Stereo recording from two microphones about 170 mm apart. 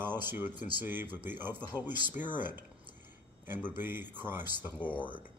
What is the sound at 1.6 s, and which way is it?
Speech, 25° left (ahead or behind).